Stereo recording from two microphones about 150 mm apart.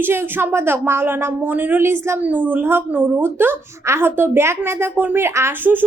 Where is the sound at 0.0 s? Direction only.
15° right (ahead or behind).